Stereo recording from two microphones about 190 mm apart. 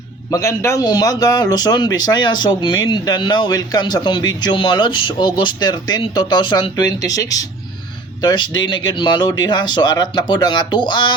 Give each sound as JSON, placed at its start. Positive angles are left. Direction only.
{"t": 0.3, "sound": "a man's voice", "side_deg": 15}